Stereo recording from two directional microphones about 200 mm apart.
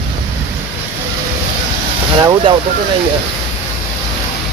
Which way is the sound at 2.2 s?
20° right (ahead or behind).